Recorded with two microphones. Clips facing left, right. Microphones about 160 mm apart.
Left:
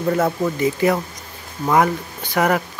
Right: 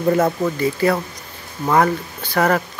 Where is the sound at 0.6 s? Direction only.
20° left (ahead or behind).